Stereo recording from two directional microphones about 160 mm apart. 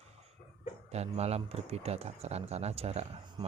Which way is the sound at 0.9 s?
40° right (ahead or behind).